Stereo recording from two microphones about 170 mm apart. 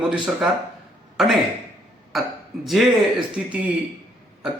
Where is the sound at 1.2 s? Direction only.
Centre (ahead or behind).